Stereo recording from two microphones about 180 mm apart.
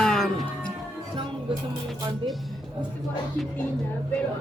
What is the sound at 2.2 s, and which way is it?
Speech, 30° right (ahead or behind).